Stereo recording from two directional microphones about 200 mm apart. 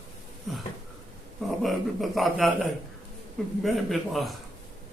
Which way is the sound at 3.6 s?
Centre (ahead or behind).